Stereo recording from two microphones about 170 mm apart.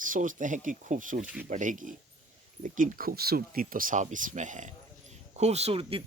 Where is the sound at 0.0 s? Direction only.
50° right (ahead or behind).